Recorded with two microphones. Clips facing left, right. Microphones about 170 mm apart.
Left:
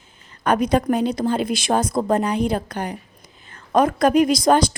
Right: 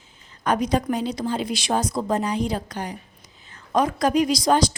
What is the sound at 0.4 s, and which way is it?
A woman's voice, 55° left (ahead or behind).